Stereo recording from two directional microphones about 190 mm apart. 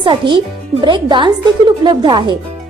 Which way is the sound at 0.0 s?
25° right (ahead or behind).